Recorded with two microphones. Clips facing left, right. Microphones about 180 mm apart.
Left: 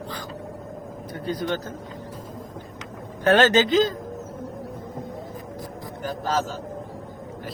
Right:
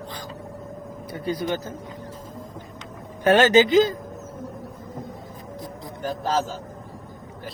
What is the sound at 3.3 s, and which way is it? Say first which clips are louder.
Speech: right 2 dB; 10° right (ahead or behind).